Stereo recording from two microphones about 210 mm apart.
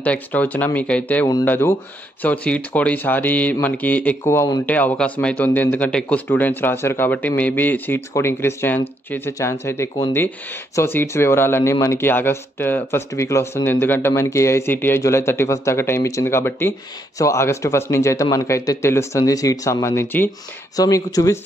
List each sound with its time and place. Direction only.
0.0 s speech: 5° left (ahead or behind)